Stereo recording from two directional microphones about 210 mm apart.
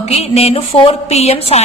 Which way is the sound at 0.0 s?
30° left (ahead or behind).